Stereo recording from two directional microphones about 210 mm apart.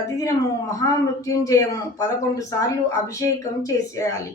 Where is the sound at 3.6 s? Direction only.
15° left (ahead or behind).